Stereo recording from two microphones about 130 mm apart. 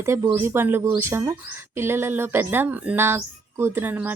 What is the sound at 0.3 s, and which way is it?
Speech, 20° right (ahead or behind).